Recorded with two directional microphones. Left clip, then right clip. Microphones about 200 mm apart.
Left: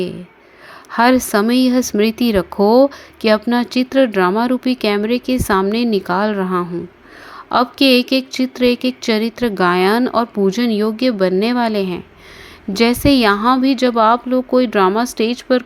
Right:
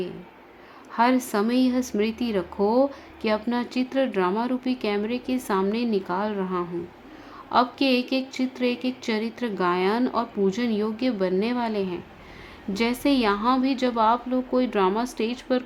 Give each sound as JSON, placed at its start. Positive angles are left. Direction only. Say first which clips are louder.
{"t": 0.9, "sound": "speech", "louder": "left 9 dB", "side_deg": 30}